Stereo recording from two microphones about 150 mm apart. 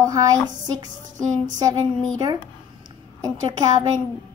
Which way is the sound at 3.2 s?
25° right (ahead or behind).